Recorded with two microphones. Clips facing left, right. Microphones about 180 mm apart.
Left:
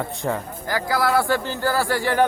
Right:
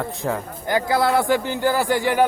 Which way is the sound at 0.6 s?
20° right (ahead or behind).